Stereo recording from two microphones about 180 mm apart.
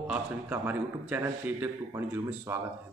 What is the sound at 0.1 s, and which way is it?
Speech, 10° right (ahead or behind).